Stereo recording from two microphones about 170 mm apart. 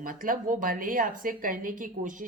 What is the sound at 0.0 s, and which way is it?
A woman's voice, 55° right (ahead or behind).